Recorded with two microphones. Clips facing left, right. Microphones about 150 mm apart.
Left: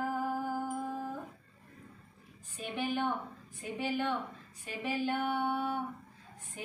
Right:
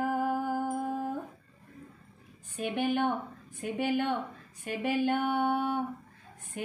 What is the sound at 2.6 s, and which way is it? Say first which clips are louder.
Music: right 5 dB; 60° right (ahead or behind).